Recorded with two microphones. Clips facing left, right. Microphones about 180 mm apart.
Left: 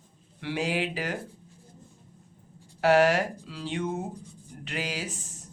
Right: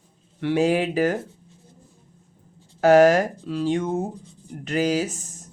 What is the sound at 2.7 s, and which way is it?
A man's voice, 45° right (ahead or behind).